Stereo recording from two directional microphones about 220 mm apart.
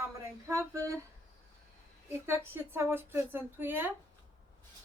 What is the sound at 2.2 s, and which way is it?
Speech, 10° right (ahead or behind).